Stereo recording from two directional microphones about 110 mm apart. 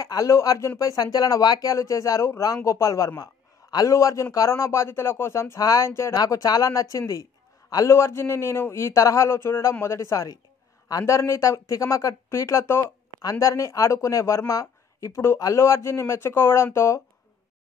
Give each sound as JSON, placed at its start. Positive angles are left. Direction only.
{"t": 0.0, "sound": "speech", "side_deg": 30}
{"t": 6.1, "sound": "speech", "side_deg": 35}